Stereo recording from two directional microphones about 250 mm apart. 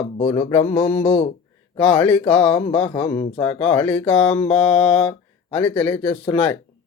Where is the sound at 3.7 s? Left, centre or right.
Centre.